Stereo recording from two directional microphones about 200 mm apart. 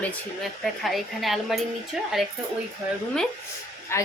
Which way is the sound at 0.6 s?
Centre (ahead or behind).